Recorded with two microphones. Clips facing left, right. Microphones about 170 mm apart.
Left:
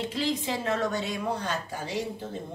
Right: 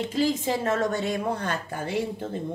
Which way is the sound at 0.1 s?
45° right (ahead or behind).